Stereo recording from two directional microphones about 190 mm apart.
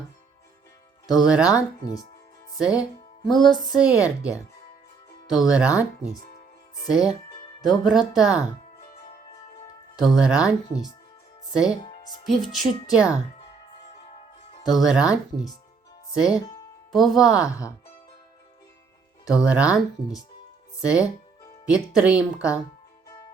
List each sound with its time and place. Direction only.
1.1 s speech: 5° right (ahead or behind)
6.9 s speech: 5° right (ahead or behind)
10.0 s speech: 5° right (ahead or behind)
11.5 s speech: 5° right (ahead or behind)
11.8 s music: 25° left (ahead or behind)
12.2 s speech: centre (ahead or behind)
14.7 s speech: centre (ahead or behind)
16.1 s speech: 5° right (ahead or behind)
19.5 s speech: 5° right (ahead or behind)
20.8 s speech: 5° right (ahead or behind)